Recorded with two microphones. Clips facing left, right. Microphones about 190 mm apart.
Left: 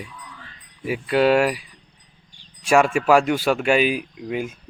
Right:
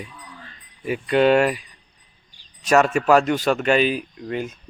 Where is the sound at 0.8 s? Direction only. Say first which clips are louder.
Right 1 dB; 5° left (ahead or behind).